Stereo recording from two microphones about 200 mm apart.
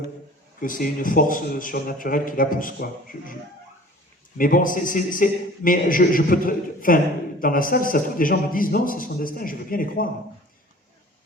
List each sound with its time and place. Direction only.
0.6 s a man's voice: 45° left (ahead or behind)
4.4 s a man's voice: 45° left (ahead or behind)